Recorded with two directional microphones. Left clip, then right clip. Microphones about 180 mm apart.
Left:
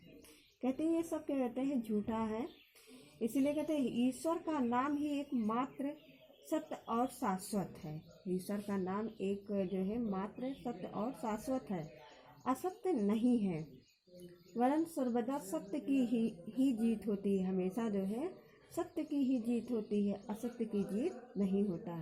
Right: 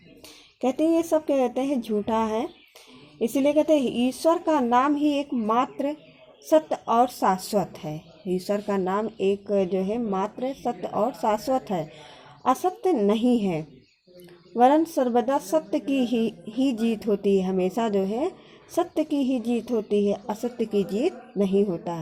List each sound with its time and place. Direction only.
0.6 s a woman's voice: 40° right (ahead or behind)